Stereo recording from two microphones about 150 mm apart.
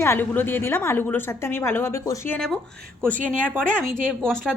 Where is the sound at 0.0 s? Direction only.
15° left (ahead or behind).